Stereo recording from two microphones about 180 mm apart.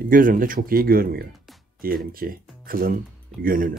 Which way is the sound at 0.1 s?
50° right (ahead or behind).